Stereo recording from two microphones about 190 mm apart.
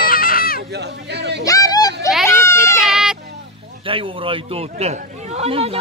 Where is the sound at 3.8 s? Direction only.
30° right (ahead or behind).